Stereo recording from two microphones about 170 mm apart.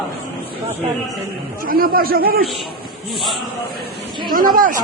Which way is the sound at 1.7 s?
60° right (ahead or behind).